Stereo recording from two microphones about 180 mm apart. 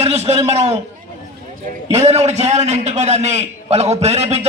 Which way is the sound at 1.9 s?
35° right (ahead or behind).